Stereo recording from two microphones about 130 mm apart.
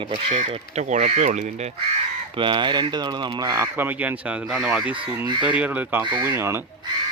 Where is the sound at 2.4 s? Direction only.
40° right (ahead or behind).